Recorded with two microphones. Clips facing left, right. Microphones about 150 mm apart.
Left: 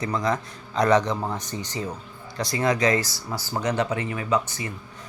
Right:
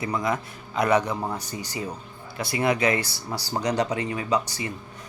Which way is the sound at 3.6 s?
35° right (ahead or behind).